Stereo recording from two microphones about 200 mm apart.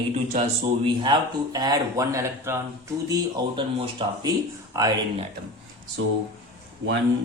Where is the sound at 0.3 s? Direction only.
30° right (ahead or behind).